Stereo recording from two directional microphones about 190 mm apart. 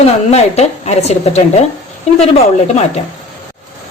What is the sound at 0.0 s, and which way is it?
A woman's voice, 35° left (ahead or behind).